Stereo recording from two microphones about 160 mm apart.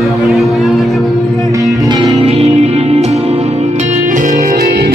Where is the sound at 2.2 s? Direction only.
40° right (ahead or behind).